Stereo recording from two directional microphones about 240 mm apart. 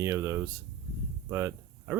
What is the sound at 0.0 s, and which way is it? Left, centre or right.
Speech, centre.